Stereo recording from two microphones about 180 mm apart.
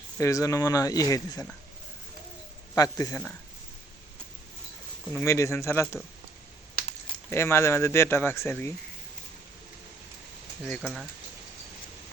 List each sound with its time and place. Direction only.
0.2 s speech: 15° left (ahead or behind)
2.7 s speech: 20° left (ahead or behind)
5.1 s speech: 15° left (ahead or behind)
7.3 s speech: 15° left (ahead or behind)
10.7 s speech: centre (ahead or behind)